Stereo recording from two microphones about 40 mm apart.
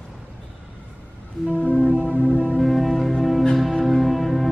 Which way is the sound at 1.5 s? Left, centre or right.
Left.